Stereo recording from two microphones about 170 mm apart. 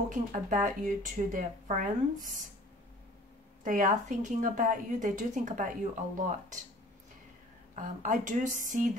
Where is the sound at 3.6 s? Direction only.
50° right (ahead or behind).